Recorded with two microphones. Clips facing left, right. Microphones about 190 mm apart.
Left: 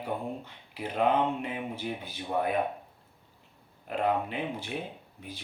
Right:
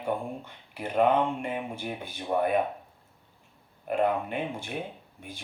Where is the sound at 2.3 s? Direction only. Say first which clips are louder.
Right 3 dB; 55° right (ahead or behind).